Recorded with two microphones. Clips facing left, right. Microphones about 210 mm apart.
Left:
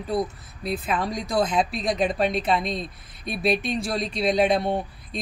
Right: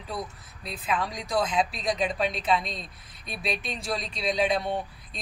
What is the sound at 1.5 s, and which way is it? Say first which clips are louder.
Speech: left 3 dB; 50° left (ahead or behind).